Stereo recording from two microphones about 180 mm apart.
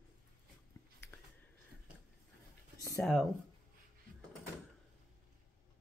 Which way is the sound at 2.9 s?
Centre (ahead or behind).